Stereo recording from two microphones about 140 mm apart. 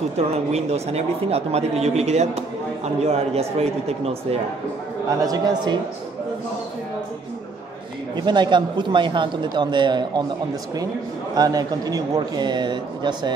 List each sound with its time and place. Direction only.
0.3 s speech: 50° right (ahead or behind)
5.2 s speech: 30° right (ahead or behind)
8.2 s speech: 35° right (ahead or behind)
11.3 s speech: 25° right (ahead or behind)